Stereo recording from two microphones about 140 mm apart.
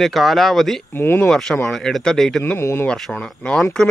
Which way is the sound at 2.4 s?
15° left (ahead or behind).